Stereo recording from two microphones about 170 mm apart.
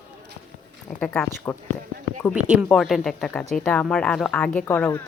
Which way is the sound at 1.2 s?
15° left (ahead or behind).